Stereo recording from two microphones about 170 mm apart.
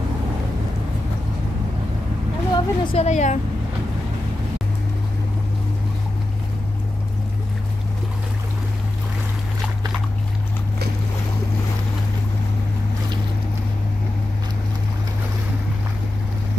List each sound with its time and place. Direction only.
2.5 s a woman's voice: 35° left (ahead or behind)